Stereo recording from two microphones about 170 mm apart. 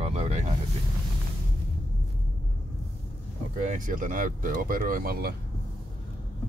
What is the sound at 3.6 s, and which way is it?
Speech, 50° right (ahead or behind).